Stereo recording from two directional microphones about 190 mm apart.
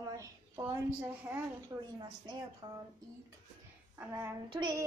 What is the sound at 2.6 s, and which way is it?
Speech, 25° right (ahead or behind).